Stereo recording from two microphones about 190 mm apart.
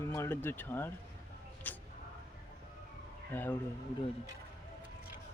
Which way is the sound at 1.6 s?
10° left (ahead or behind).